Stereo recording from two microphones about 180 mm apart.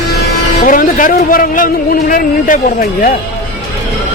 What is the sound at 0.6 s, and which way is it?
A man's voice, 50° left (ahead or behind).